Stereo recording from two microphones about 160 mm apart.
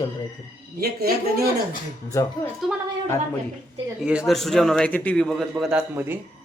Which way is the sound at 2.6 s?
Centre (ahead or behind).